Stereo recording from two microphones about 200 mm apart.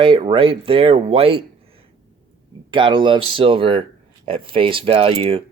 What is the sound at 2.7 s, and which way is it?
Speech, 25° right (ahead or behind).